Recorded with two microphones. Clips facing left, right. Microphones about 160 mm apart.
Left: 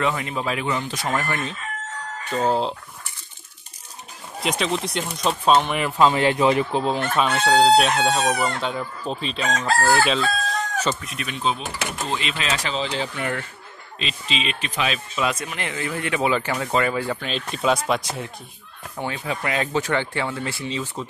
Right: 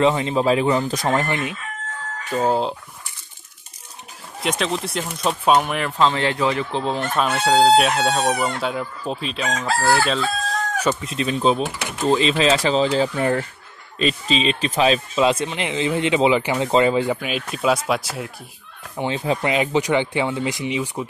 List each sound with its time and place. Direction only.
0.0 s speech: 25° right (ahead or behind)
1.1 s speech: 20° right (ahead or behind)
2.2 s chicken: 5° right (ahead or behind)
4.4 s chicken: centre (ahead or behind)
5.1 s speech: 5° right (ahead or behind); by 6.8 s 15° left (ahead or behind)
6.8 s chicken: 5° left (ahead or behind)
11.0 s speech: 30° right (ahead or behind)
17.2 s chicken: 10° right (ahead or behind)
18.9 s speech: 25° right (ahead or behind)